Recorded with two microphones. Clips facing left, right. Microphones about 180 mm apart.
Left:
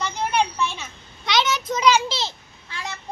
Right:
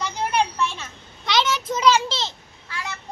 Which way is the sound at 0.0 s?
5° right (ahead or behind).